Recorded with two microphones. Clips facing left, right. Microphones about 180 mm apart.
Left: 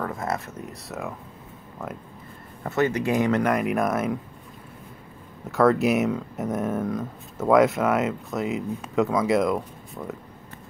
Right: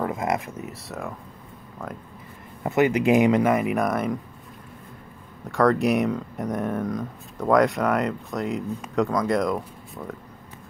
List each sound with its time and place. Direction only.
0.0 s speech: 15° right (ahead or behind); by 1.1 s centre (ahead or behind)
2.6 s speech: 15° right (ahead or behind)
3.4 s speech: centre (ahead or behind)
5.5 s speech: centre (ahead or behind)